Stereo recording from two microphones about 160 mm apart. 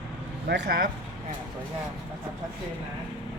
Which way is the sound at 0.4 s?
90° right.